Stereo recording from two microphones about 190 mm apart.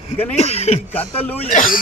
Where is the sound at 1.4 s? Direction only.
45° left (ahead or behind).